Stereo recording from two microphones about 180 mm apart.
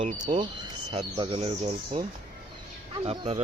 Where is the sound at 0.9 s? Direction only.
30° right (ahead or behind).